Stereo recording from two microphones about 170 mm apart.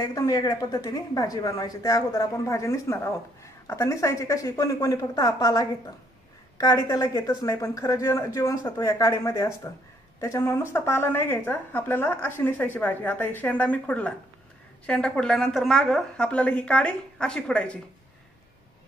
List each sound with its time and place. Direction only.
0.0 s a woman's voice: 20° left (ahead or behind); by 17.7 s 5° left (ahead or behind)